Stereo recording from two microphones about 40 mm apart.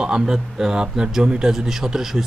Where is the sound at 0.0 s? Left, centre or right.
Right.